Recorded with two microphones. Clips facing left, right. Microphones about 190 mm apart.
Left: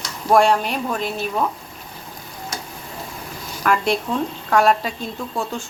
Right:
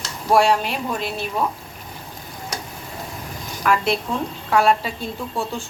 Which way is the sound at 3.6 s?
Centre (ahead or behind).